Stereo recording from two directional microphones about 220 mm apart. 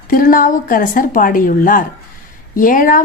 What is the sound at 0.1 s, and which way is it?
Speech, 40° left (ahead or behind).